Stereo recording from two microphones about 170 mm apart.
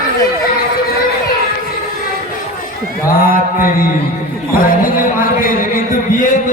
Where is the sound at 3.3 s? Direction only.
55° left (ahead or behind).